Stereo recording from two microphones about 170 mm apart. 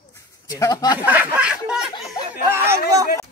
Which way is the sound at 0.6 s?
20° left (ahead or behind).